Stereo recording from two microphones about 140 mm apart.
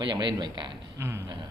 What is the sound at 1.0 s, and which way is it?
Speech, 15° right (ahead or behind).